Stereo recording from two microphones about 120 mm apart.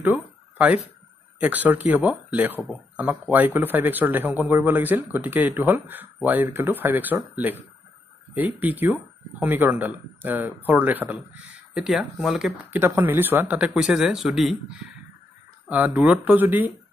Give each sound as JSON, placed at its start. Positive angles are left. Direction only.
{"t": 0.0, "sound": "a sound", "side_deg": -15}
{"t": 1.4, "sound": "speech", "side_deg": -15}
{"t": 12.7, "sound": "speech", "side_deg": -20}
{"t": 15.7, "sound": "speech", "side_deg": -15}